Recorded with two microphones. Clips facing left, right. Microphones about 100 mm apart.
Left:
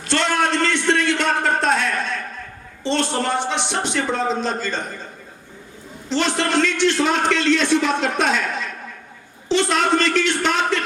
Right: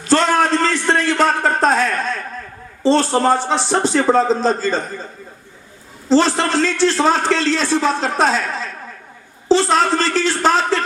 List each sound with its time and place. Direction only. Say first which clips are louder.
0.1 s a sound: right 5 dB; 40° right (ahead or behind)
2.8 s a man's voice: right 7 dB; 35° right (ahead or behind)
6.1 s a man's voice: right 6 dB; 35° right (ahead or behind)